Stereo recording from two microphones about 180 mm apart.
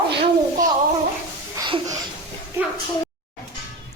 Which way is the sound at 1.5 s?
20° right (ahead or behind).